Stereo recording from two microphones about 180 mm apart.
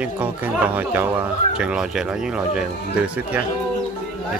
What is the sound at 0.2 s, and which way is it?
Speech, 10° right (ahead or behind).